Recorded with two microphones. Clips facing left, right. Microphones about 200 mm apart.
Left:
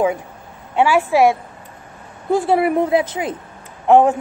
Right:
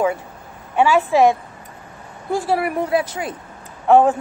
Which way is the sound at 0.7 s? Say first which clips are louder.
Even; 15° left (ahead or behind).